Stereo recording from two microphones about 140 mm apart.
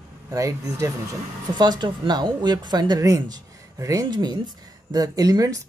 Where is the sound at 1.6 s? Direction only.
35° right (ahead or behind).